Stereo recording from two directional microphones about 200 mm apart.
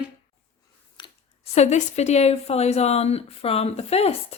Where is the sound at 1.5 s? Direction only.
35° left (ahead or behind).